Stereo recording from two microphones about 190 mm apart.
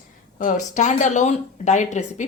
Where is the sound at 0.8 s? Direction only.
40° left (ahead or behind).